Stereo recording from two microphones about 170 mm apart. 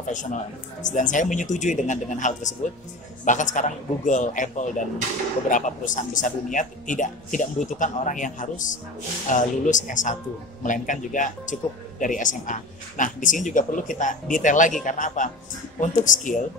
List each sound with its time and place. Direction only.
0.0 s a man's voice: 45° left (ahead or behind)